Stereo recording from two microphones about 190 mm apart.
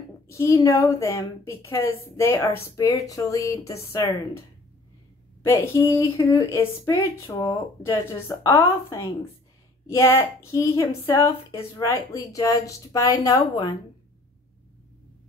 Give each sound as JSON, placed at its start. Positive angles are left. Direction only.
{"t": 0.3, "sound": "a woman's voice", "side_deg": 15}
{"t": 5.4, "sound": "a woman's voice", "side_deg": 10}